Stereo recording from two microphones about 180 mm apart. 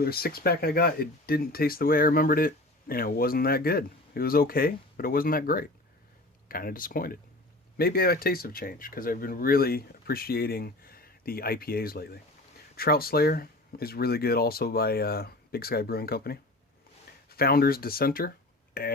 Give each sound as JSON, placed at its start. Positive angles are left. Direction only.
{"t": 0.0, "sound": "speech", "side_deg": 60}